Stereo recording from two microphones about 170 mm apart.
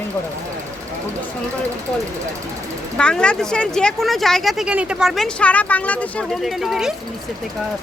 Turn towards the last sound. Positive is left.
turn(degrees=0)  # may be behind; listen again after turning